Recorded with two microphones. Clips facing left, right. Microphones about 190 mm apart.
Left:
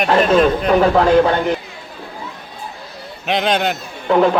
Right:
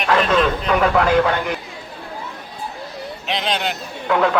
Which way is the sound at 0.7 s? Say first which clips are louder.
Left 3 dB; 30° left (ahead or behind).